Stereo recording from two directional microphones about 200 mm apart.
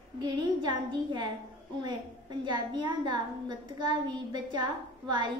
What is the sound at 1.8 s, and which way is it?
A woman's voice, 20° right (ahead or behind).